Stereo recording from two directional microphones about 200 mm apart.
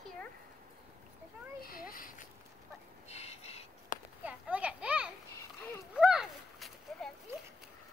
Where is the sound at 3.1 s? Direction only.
30° left (ahead or behind).